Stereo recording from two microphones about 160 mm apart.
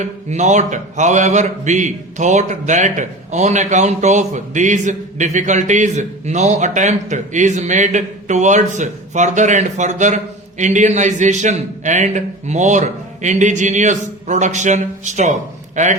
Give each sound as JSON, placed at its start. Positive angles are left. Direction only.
{"t": 0.0, "sound": "speech", "side_deg": -45}